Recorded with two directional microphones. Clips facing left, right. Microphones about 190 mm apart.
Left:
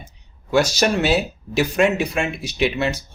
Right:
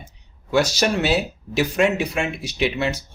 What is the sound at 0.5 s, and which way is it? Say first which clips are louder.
A man's voice: left 2 dB; 45° left (ahead or behind).